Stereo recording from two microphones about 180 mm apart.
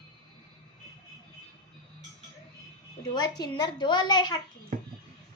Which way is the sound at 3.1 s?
20° left (ahead or behind).